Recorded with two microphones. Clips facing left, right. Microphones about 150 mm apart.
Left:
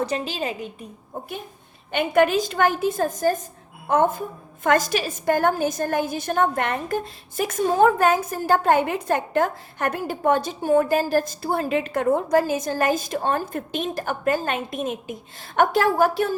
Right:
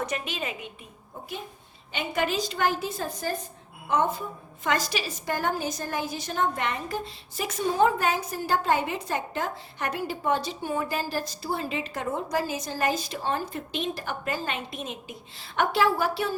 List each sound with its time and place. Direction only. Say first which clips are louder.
0.0 s a woman's voice: left 6 dB; 30° left (ahead or behind)
1.9 s a woman's voice: left 9 dB; 55° left (ahead or behind)